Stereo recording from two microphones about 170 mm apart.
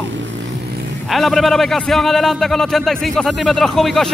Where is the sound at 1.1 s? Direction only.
Centre (ahead or behind).